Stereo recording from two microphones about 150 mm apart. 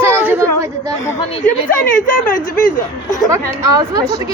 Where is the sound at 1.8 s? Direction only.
65° left (ahead or behind).